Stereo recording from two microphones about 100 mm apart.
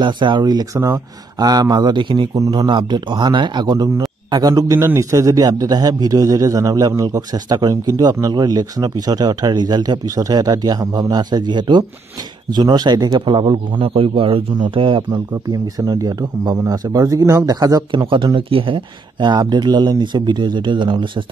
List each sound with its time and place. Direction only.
0.0 s speech: 50° right (ahead or behind)
4.7 s a man's voice: 25° right (ahead or behind); by 15.0 s 60° right (ahead or behind)
15.0 s speech: 40° right (ahead or behind)
17.9 s speech: 55° right (ahead or behind)